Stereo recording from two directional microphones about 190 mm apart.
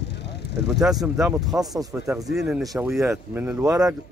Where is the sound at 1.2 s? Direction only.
15° right (ahead or behind).